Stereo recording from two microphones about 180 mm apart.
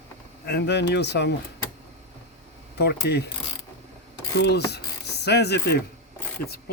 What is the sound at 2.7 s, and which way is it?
Speech, 65° left (ahead or behind).